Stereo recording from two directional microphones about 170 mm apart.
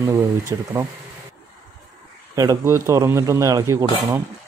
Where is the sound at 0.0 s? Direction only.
15° right (ahead or behind).